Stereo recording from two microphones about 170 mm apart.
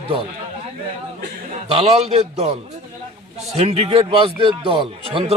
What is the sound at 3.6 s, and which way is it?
A man's voice, 40° right (ahead or behind).